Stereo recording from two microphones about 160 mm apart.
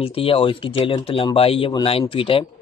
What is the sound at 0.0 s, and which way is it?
A man's voice, 35° left (ahead or behind).